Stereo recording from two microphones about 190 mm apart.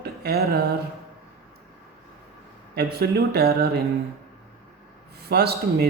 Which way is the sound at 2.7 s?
55° right (ahead or behind).